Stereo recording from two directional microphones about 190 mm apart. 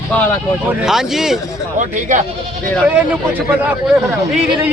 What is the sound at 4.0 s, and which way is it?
Speech, 15° right (ahead or behind).